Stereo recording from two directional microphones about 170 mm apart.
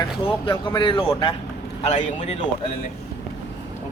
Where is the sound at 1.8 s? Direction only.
40° left (ahead or behind).